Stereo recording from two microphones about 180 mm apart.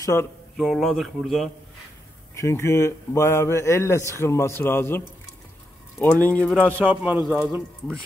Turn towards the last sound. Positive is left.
turn(degrees=-5)  # may be behind; listen again after turning